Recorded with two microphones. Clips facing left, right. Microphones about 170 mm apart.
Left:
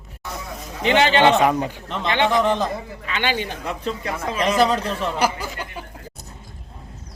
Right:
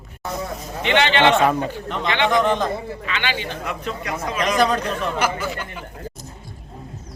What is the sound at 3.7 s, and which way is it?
Speech, 30° left (ahead or behind).